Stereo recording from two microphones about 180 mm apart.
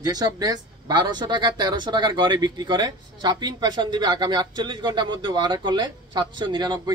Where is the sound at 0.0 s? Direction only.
20° right (ahead or behind).